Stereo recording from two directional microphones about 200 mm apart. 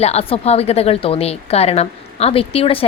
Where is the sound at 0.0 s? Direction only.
30° left (ahead or behind).